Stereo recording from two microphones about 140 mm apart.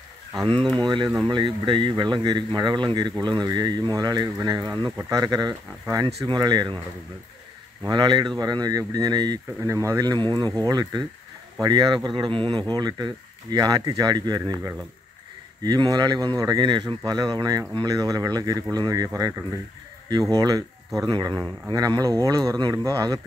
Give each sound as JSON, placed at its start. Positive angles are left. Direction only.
{"t": 0.7, "sound": "speech", "side_deg": -30}
{"t": 7.9, "sound": "speech", "side_deg": -35}
{"t": 12.6, "sound": "speech", "side_deg": -30}